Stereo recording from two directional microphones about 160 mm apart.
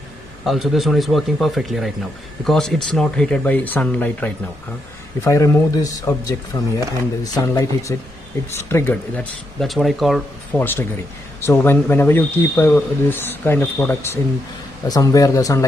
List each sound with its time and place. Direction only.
0.5 s speech: centre (ahead or behind)
10.5 s speech: 10° left (ahead or behind)